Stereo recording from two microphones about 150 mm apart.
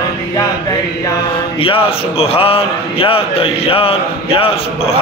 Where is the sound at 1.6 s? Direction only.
35° left (ahead or behind).